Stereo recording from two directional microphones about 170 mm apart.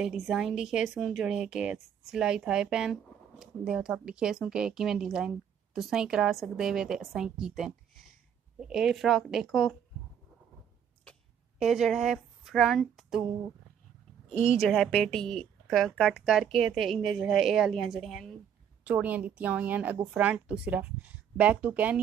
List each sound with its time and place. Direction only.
0.0 s speech: 5° right (ahead or behind)
11.1 s a sound: centre (ahead or behind)
14.3 s speech: 50° left (ahead or behind)
14.6 s a woman's voice: centre (ahead or behind)